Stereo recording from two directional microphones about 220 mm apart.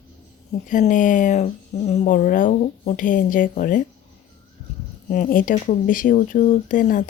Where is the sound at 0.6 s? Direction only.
35° left (ahead or behind).